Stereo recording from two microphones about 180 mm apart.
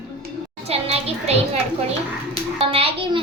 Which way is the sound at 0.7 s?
35° right (ahead or behind).